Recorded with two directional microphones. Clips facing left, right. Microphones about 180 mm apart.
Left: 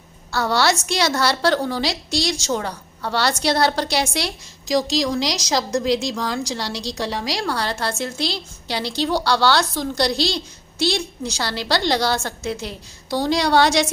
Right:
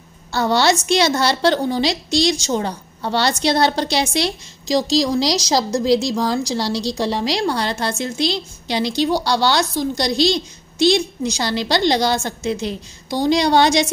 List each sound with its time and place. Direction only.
0.3 s a woman's voice: 20° right (ahead or behind)